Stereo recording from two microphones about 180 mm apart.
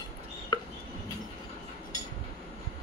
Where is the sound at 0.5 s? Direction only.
25° left (ahead or behind).